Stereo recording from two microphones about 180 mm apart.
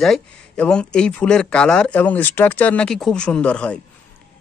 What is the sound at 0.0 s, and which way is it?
Speech, 5° left (ahead or behind).